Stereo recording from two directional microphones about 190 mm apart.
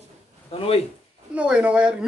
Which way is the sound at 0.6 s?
30° left (ahead or behind).